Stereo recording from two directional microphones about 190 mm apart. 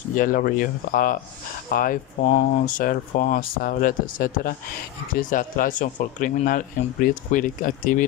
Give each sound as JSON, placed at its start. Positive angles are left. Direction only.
{"t": 0.1, "sound": "speech", "side_deg": 45}